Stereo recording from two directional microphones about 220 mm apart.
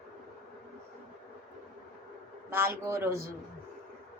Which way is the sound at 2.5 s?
10° right (ahead or behind).